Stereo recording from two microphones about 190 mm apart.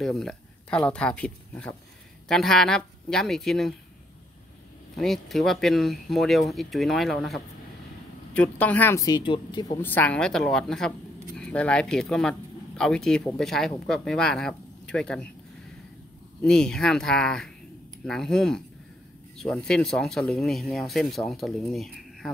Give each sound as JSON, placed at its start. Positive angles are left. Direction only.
{"t": 0.0, "sound": "speech", "side_deg": 0}
{"t": 4.9, "sound": "speech", "side_deg": 0}
{"t": 9.8, "sound": "speech", "side_deg": 10}
{"t": 16.4, "sound": "speech", "side_deg": 5}